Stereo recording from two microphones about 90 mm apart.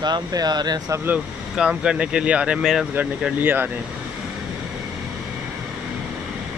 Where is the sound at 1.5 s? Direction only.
10° right (ahead or behind).